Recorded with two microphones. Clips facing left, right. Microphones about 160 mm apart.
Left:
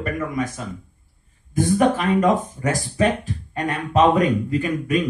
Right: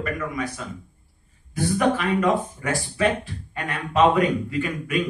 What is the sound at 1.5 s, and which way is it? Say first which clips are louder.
Speech: left 4 dB; 45° left (ahead or behind).